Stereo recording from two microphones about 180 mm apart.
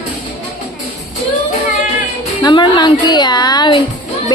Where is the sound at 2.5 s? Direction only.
25° left (ahead or behind).